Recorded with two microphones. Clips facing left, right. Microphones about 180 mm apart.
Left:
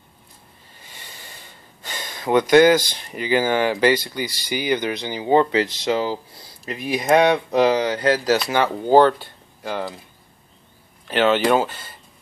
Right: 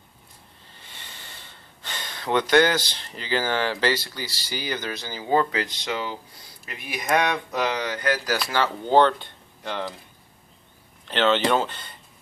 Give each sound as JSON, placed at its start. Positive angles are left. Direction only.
{"t": 0.8, "sound": "speech", "side_deg": 10}
{"t": 8.5, "sound": "speech", "side_deg": 15}
{"t": 11.1, "sound": "speech", "side_deg": 10}